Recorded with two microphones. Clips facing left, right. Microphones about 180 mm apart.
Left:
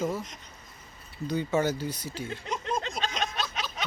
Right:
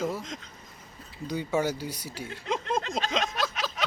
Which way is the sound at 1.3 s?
10° right (ahead or behind).